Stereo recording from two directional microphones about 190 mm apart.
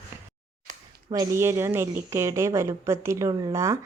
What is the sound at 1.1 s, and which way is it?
Speech, 15° right (ahead or behind).